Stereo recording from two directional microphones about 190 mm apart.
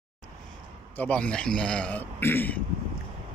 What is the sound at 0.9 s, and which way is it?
A man's voice, 5° left (ahead or behind).